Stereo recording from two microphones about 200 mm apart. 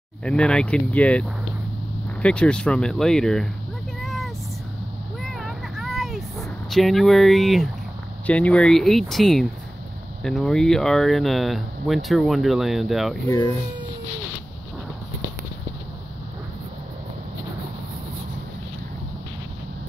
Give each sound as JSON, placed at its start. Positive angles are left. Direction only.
{"t": 0.2, "sound": "speech", "side_deg": 5}
{"t": 2.2, "sound": "speech", "side_deg": 5}
{"t": 4.0, "sound": "vehicle", "side_deg": 0}
{"t": 5.2, "sound": "a sound", "side_deg": 0}
{"t": 8.3, "sound": "speech", "side_deg": 5}
{"t": 13.3, "sound": "speech", "side_deg": 20}